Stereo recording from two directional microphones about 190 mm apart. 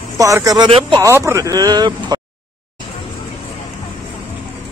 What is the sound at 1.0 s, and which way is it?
A man's voice, 15° right (ahead or behind).